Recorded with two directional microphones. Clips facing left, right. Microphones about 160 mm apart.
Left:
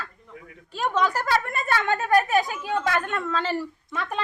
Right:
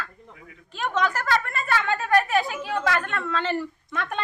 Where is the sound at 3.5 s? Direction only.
5° left (ahead or behind).